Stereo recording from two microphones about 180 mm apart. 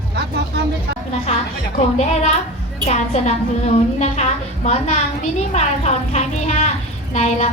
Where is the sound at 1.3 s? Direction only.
40° left (ahead or behind).